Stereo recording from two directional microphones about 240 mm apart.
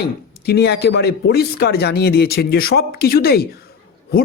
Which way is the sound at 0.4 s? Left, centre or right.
Left.